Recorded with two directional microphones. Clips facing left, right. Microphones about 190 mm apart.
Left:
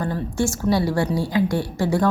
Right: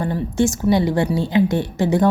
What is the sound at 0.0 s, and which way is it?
A woman's voice, 20° right (ahead or behind).